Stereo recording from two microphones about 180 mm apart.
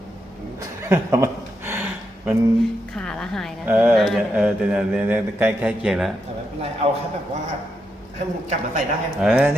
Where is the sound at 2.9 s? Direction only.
5° left (ahead or behind).